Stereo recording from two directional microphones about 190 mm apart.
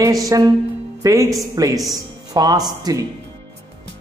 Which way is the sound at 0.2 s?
20° right (ahead or behind).